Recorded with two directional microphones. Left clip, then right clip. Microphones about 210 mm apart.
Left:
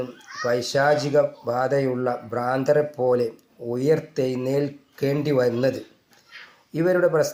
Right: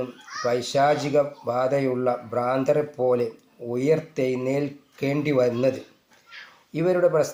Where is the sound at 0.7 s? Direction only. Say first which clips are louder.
Left 1 dB; 25° left (ahead or behind).